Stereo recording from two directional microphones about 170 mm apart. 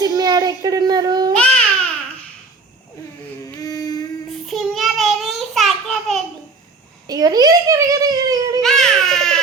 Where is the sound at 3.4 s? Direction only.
20° left (ahead or behind).